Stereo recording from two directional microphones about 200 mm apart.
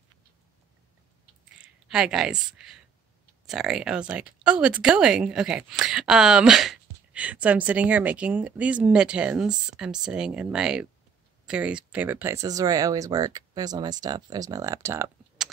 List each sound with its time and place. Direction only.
1.9 s speech: 5° right (ahead or behind)
15.4 s typing: 5° right (ahead or behind)